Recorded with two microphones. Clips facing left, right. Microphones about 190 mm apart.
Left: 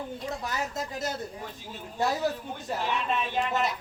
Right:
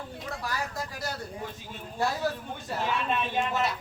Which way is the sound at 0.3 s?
20° left (ahead or behind).